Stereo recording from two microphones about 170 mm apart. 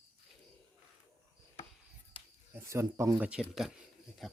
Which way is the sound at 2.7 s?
15° right (ahead or behind).